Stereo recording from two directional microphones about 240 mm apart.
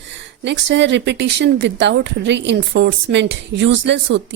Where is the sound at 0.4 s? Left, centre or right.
Right.